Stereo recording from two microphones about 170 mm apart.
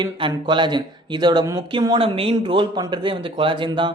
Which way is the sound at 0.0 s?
25° right (ahead or behind).